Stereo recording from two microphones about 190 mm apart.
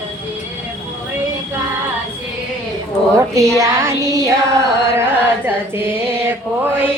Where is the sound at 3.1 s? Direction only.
15° right (ahead or behind).